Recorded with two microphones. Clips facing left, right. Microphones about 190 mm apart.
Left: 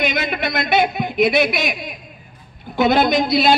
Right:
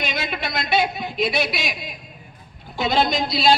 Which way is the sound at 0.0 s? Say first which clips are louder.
Left 6 dB; 55° left (ahead or behind).